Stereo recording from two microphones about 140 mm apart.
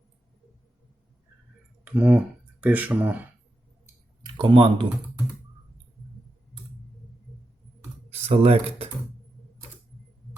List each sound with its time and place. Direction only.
1.8 s speech: 10° right (ahead or behind)
4.2 s speech: 35° right (ahead or behind)
8.1 s speech: 45° right (ahead or behind)